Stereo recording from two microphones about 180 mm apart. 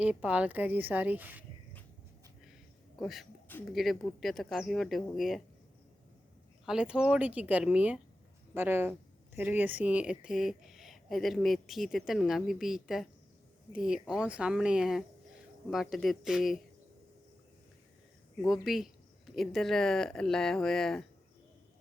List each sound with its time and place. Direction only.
0.0 s speech: 5° right (ahead or behind)
2.4 s a sound: centre (ahead or behind)
3.7 s speech: centre (ahead or behind)
6.7 s speech: 5° right (ahead or behind)
18.4 s speech: centre (ahead or behind)